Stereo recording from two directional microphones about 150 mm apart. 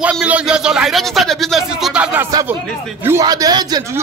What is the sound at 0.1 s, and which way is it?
A man's voice, 5° right (ahead or behind).